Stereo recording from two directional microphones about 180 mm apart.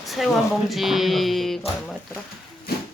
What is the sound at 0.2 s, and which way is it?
Speech, centre (ahead or behind).